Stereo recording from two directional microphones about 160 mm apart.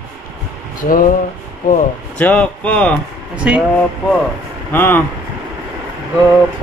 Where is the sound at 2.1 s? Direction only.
5° left (ahead or behind).